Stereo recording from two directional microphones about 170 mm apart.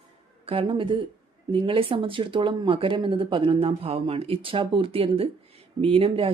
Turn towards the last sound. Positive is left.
turn(degrees=-35)  # may be behind; listen again after turning